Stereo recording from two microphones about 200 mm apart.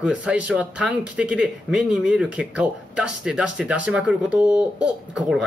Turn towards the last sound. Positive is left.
turn(degrees=-5)  # may be behind; listen again after turning